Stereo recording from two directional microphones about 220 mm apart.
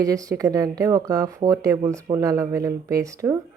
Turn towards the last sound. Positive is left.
turn(degrees=-15)  # may be behind; listen again after turning